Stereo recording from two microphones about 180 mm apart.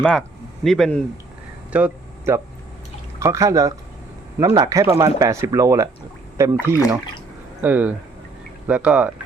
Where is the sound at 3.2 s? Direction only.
15° right (ahead or behind).